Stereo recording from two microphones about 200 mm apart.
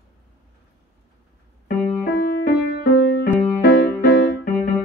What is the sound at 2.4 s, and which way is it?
Music, 50° left (ahead or behind).